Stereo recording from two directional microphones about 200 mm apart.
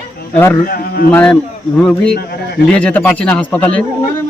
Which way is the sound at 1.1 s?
10° left (ahead or behind).